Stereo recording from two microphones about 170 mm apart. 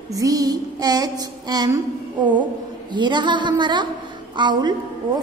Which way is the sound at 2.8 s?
25° right (ahead or behind).